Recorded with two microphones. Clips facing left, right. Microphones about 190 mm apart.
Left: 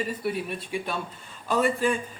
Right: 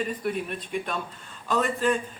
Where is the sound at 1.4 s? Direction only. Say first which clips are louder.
Left 1 dB; 10° left (ahead or behind).